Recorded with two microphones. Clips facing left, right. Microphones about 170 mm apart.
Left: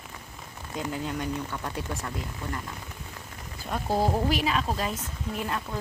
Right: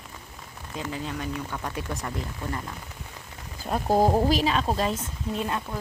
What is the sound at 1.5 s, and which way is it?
Speech, 15° right (ahead or behind).